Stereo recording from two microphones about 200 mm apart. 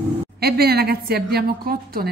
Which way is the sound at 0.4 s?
50° right (ahead or behind).